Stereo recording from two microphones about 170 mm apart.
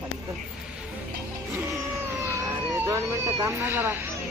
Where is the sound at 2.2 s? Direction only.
15° right (ahead or behind).